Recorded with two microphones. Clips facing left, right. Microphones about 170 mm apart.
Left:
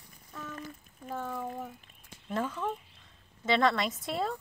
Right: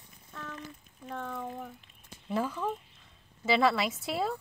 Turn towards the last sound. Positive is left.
turn(degrees=-5)  # may be behind; listen again after turning